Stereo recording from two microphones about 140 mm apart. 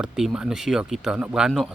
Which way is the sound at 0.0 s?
5° right (ahead or behind).